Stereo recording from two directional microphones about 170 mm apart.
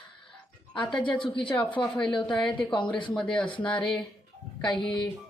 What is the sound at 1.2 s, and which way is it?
Speech, 30° left (ahead or behind).